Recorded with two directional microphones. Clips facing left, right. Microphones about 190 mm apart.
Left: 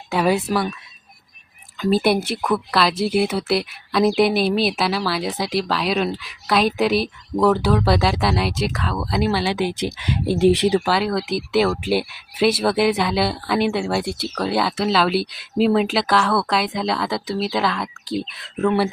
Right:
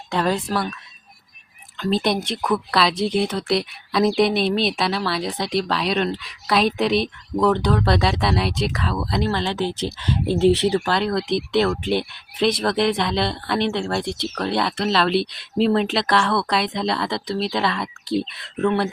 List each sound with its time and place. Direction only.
0.1 s fowl: 10° left (ahead or behind)
1.8 s speech: 5° left (ahead or behind)